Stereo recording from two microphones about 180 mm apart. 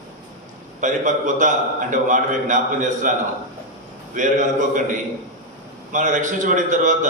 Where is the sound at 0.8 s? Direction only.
45° right (ahead or behind).